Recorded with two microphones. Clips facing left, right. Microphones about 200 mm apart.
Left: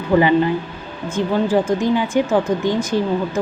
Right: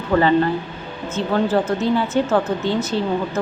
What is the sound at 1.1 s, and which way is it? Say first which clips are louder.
A woman's voice: left 2 dB; 15° left (ahead or behind).